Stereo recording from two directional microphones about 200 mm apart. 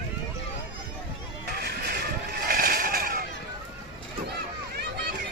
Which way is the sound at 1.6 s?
55° right (ahead or behind).